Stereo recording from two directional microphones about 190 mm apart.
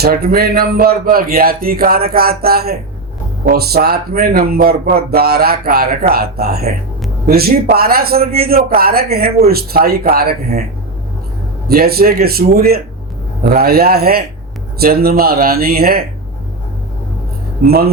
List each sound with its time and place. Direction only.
0.0 s speech: 55° right (ahead or behind)
11.7 s speech: 55° right (ahead or behind)